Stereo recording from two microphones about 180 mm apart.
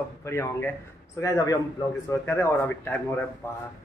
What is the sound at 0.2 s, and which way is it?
A man's voice, 15° left (ahead or behind).